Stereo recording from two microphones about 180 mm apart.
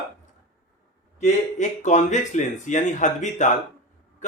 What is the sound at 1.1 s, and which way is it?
Speech, 40° left (ahead or behind).